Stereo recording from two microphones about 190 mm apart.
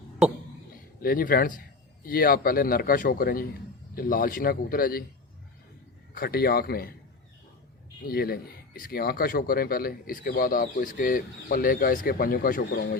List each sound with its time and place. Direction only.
1.0 s speech: 50° left (ahead or behind)
6.1 s speech: 55° left (ahead or behind)
8.0 s speech: 55° left (ahead or behind)